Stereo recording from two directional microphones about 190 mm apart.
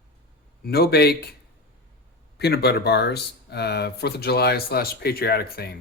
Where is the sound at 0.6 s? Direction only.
55° left (ahead or behind).